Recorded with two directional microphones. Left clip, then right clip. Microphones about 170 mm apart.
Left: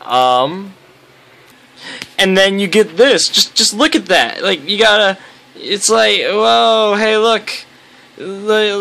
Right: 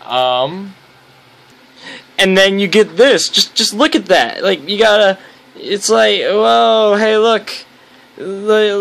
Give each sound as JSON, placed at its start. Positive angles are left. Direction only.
{"t": 0.0, "sound": "speech", "side_deg": 20}
{"t": 1.8, "sound": "speech", "side_deg": 0}